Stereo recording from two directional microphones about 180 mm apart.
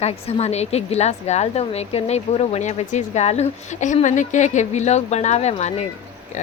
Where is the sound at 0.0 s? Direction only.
35° left (ahead or behind).